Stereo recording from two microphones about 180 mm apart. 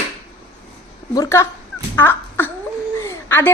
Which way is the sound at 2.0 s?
10° left (ahead or behind).